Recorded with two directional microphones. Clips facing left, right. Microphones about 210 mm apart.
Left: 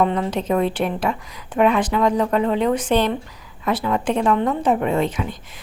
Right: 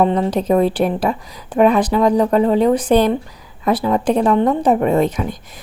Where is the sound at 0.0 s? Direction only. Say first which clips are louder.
Right 4 dB; 35° right (ahead or behind).